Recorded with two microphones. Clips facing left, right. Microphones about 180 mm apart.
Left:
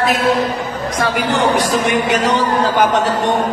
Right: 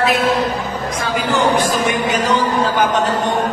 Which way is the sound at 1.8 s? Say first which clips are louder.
Left 2 dB; 70° left (ahead or behind).